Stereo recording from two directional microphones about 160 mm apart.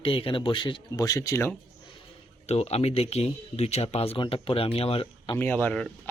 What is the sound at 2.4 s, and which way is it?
Speech, 40° left (ahead or behind).